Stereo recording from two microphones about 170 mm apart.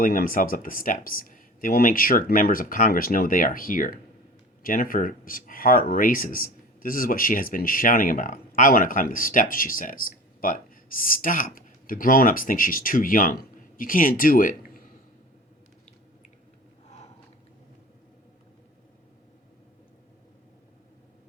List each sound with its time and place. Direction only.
0.0 s speech: 55° left (ahead or behind)